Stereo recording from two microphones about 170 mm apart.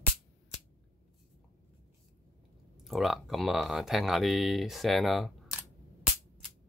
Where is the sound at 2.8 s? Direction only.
Centre (ahead or behind).